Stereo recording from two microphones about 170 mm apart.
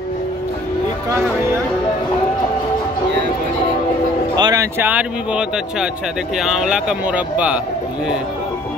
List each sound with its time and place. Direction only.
4.4 s speech: 20° right (ahead or behind)